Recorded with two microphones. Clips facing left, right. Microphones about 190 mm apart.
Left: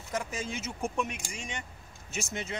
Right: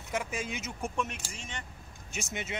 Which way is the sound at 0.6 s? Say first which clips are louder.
Left 2 dB; 10° left (ahead or behind).